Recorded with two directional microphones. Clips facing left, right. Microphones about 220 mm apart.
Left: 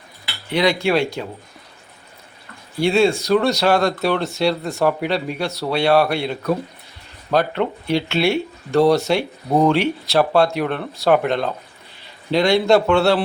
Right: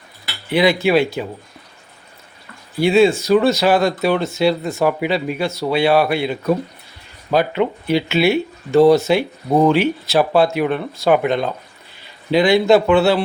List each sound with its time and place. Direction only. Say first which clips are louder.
0.5 s speech: right 3 dB; 5° right (ahead or behind)
2.7 s speech: right 3 dB; 5° right (ahead or behind)